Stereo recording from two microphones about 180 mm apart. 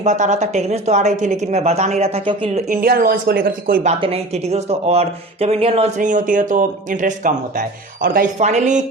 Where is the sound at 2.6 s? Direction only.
55° right (ahead or behind).